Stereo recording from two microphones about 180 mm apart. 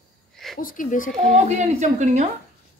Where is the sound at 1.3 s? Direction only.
40° right (ahead or behind).